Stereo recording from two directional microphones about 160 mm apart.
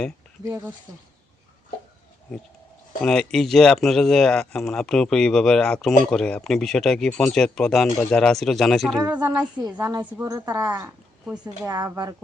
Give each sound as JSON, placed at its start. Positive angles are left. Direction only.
{"t": 3.0, "sound": "speech", "side_deg": 5}
{"t": 9.0, "sound": "a woman's voice", "side_deg": -10}
{"t": 9.6, "sound": "a woman's voice", "side_deg": -25}
{"t": 10.0, "sound": "a woman's voice", "side_deg": -10}
{"t": 10.2, "sound": "a woman's voice", "side_deg": -20}